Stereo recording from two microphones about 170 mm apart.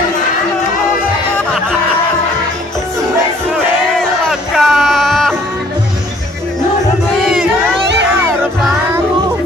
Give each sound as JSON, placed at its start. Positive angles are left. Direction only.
{"t": 4.3, "sound": "music", "side_deg": 0}
{"t": 7.8, "sound": "music", "side_deg": -90}